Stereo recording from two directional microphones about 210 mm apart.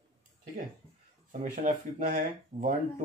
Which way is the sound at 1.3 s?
35° right (ahead or behind).